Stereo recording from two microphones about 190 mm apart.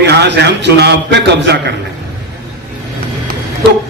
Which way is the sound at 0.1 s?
65° right (ahead or behind).